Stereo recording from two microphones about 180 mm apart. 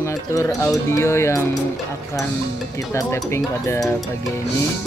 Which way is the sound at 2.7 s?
15° left (ahead or behind).